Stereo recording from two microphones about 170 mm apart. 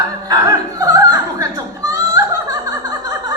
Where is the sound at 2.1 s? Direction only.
20° right (ahead or behind).